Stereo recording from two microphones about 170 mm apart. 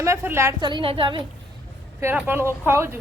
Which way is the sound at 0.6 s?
30° right (ahead or behind).